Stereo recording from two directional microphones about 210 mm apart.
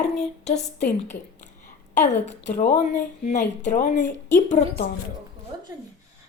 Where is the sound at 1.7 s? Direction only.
35° left (ahead or behind).